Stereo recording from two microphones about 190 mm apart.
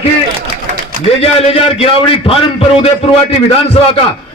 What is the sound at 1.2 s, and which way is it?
A man's voice, 30° left (ahead or behind).